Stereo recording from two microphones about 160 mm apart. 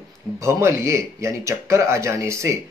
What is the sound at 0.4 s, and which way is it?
Speech, 15° right (ahead or behind).